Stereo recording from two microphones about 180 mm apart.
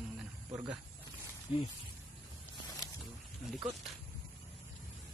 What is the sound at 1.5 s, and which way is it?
Speech, 35° left (ahead or behind).